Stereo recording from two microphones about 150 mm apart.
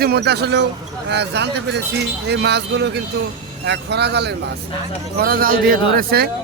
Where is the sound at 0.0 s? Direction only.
90° right.